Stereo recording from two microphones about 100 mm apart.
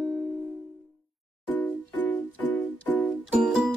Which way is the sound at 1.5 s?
15° left (ahead or behind).